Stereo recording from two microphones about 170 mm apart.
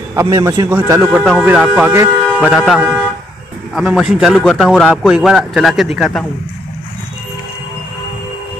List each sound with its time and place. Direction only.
0.1 s speech: 15° right (ahead or behind)
1.1 s speech: 5° right (ahead or behind)
2.4 s speech: 5° right (ahead or behind)